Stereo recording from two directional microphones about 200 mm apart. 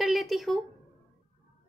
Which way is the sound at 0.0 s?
Centre (ahead or behind).